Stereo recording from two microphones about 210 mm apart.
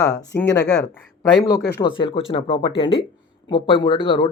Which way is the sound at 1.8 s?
25° left (ahead or behind).